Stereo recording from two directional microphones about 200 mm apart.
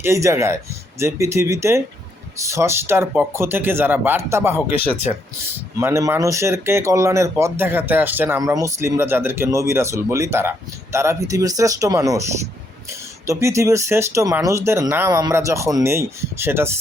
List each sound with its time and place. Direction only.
0.0 s speech: 15° right (ahead or behind)
5.8 s speech: 15° right (ahead or behind)
13.2 s speech: 15° right (ahead or behind)